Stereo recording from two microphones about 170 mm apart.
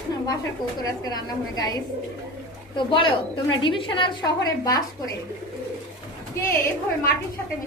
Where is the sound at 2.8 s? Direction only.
30° left (ahead or behind).